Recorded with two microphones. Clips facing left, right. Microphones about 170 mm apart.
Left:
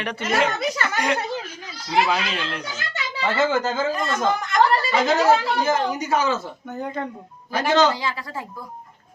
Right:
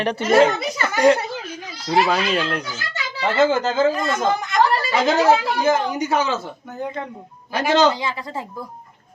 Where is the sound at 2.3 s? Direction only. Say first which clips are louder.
Right 7 dB; 40° right (ahead or behind).